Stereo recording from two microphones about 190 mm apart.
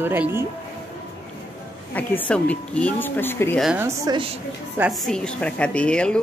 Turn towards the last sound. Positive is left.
turn(degrees=5)  # may be behind; listen again after turning